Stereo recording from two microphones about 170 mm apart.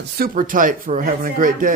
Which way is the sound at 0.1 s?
60° right (ahead or behind).